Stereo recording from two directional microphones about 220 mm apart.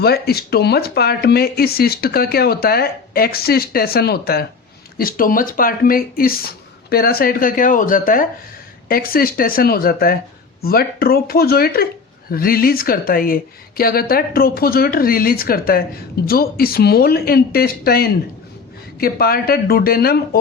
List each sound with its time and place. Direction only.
0.0 s speech: 45° left (ahead or behind)